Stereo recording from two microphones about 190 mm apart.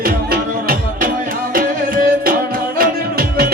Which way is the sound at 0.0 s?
50° right (ahead or behind).